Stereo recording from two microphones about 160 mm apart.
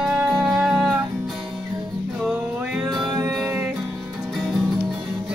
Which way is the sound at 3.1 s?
20° right (ahead or behind).